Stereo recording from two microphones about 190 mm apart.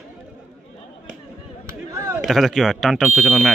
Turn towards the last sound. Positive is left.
turn(degrees=0)  # may be behind; listen again after turning